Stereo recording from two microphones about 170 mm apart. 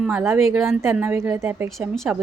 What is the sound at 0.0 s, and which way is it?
A woman's voice, 5° right (ahead or behind).